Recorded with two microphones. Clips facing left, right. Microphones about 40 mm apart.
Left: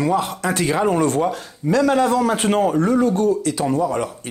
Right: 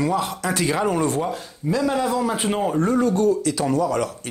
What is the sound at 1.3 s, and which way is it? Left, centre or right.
Speech, left.